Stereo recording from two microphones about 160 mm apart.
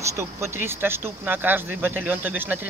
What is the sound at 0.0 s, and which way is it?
Speech, 15° right (ahead or behind).